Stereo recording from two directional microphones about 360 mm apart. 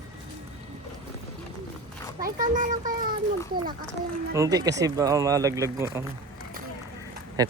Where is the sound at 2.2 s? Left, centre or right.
Right.